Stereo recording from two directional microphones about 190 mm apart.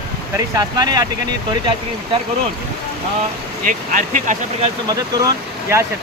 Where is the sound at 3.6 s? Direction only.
45° right (ahead or behind).